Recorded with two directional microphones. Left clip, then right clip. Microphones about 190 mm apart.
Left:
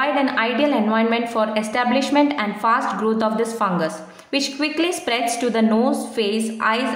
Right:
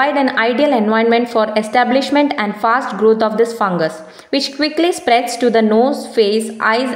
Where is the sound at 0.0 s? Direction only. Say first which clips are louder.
Right 5 dB; 35° right (ahead or behind).